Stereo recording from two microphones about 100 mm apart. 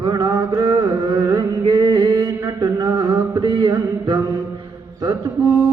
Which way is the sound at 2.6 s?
45° right (ahead or behind).